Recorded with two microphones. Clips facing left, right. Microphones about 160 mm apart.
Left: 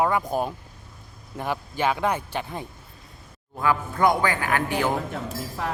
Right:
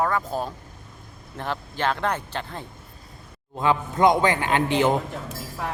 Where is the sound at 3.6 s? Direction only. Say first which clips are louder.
Right 2 dB; 20° right (ahead or behind).